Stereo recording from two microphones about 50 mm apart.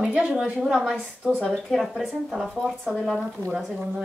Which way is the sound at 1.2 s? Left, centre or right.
Right.